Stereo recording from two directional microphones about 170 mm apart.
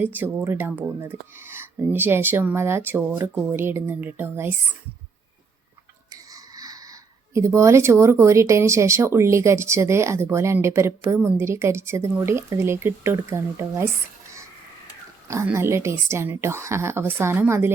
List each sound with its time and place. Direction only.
0.0 s speech: 10° right (ahead or behind)
6.1 s a sound: 20° right (ahead or behind)
7.3 s speech: 15° right (ahead or behind)
15.3 s speech: 15° right (ahead or behind)